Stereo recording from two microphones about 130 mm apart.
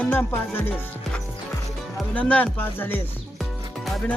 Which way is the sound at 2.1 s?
10° left (ahead or behind).